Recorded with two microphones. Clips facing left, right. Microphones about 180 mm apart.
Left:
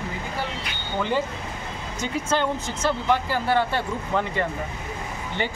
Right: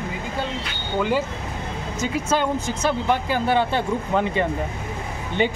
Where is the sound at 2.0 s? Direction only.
10° right (ahead or behind).